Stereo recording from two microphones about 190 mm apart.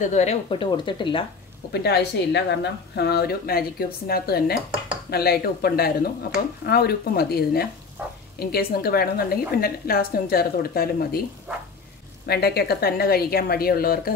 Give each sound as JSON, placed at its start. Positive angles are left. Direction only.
{"t": 0.0, "sound": "speech", "side_deg": 35}
{"t": 1.7, "sound": "a woman's voice", "side_deg": 60}
{"t": 8.0, "sound": "speech", "side_deg": -10}
{"t": 8.4, "sound": "a woman's voice", "side_deg": 55}
{"t": 12.3, "sound": "a woman's voice", "side_deg": 55}